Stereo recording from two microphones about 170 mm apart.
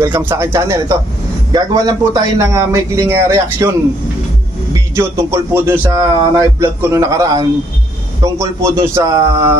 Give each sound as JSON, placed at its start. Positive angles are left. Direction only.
{"t": 0.0, "sound": "a man's voice", "side_deg": -10}
{"t": 4.7, "sound": "a man's voice", "side_deg": -15}